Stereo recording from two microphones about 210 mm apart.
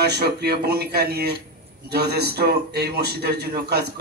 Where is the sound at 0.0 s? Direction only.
50° right (ahead or behind).